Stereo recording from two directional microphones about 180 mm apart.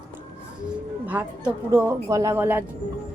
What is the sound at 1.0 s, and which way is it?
A woman's voice, 10° right (ahead or behind).